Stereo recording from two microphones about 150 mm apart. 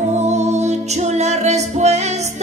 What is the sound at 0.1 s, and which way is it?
Music, 50° right (ahead or behind).